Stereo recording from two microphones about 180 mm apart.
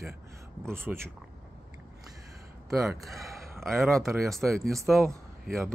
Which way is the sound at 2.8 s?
Centre (ahead or behind).